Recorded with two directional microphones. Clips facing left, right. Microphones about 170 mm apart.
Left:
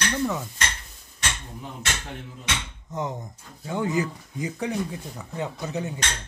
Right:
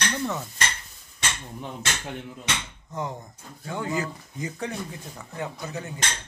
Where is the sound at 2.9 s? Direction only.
20° left (ahead or behind).